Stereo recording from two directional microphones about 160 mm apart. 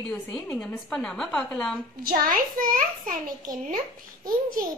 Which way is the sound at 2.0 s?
65° right (ahead or behind).